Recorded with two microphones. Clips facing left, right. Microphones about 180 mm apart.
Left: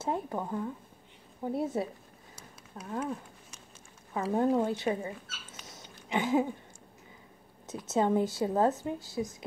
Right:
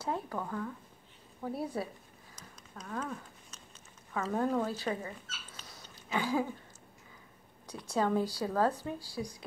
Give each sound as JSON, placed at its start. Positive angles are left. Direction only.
{"t": 0.0, "sound": "a woman's voice", "side_deg": 20}
{"t": 4.2, "sound": "speech", "side_deg": 20}
{"t": 7.6, "sound": "a woman's voice", "side_deg": 20}